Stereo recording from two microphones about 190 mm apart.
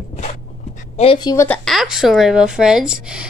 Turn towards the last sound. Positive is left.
turn(degrees=-5)  # may be behind; listen again after turning